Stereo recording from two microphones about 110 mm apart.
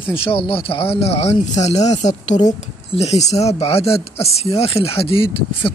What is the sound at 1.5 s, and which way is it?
Speech, 90° left.